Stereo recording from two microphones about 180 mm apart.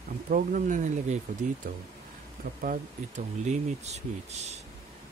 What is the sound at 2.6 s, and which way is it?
Speech, 45° right (ahead or behind).